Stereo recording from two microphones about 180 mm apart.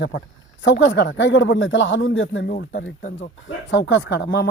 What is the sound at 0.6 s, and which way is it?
Speech, 85° left.